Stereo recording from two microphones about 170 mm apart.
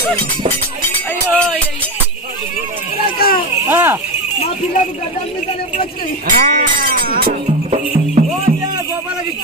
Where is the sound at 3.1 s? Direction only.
60° left (ahead or behind).